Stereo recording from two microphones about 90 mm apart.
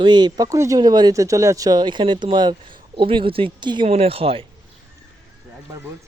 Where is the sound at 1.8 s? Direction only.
60° right (ahead or behind); by 4.4 s 90° right.